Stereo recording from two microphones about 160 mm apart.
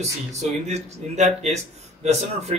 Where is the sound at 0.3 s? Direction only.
45° right (ahead or behind).